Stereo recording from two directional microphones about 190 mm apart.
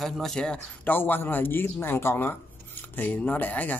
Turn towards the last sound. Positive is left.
turn(degrees=10)  # may be behind; listen again after turning